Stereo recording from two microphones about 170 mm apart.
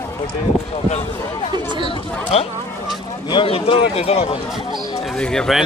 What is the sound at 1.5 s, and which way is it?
Speech, 25° right (ahead or behind).